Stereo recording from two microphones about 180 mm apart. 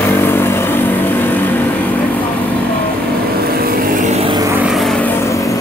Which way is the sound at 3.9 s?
35° right (ahead or behind).